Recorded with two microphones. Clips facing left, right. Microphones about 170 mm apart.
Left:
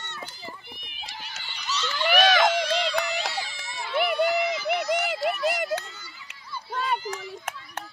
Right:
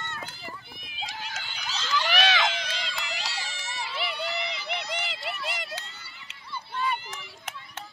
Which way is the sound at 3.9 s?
55° left (ahead or behind).